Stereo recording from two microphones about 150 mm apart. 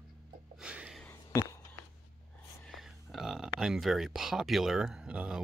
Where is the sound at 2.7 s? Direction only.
Centre (ahead or behind).